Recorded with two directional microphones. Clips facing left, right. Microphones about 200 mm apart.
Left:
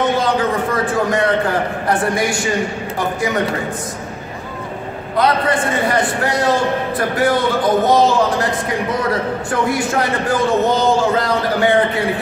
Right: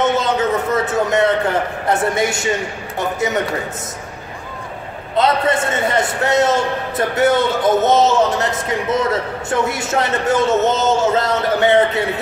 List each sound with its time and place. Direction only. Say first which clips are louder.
0.0 s a sound: even; 25° right (ahead or behind)
1.9 s a man's voice: right 1 dB; 25° right (ahead or behind)
5.1 s a man's voice: even; 25° right (ahead or behind)